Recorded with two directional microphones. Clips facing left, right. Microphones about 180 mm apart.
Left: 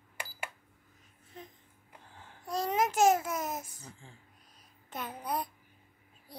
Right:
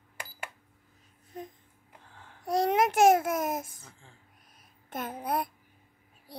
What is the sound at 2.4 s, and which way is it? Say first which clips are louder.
Babbling: right 5 dB; 65° right (ahead or behind).